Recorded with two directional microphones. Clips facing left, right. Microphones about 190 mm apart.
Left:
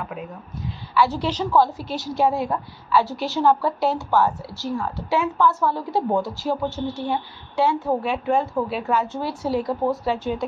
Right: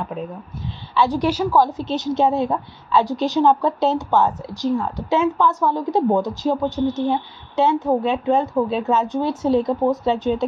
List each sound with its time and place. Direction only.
0.9 s a woman's voice: 15° right (ahead or behind)